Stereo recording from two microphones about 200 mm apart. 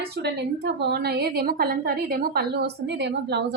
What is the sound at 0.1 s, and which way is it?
A woman's voice, 55° right (ahead or behind).